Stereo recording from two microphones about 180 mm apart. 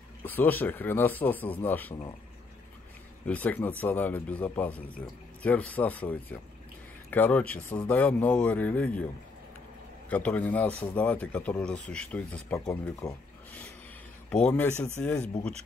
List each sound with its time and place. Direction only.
0.2 s speech: 10° left (ahead or behind)
3.3 s speech: 10° left (ahead or behind)
10.0 s speech: 5° left (ahead or behind)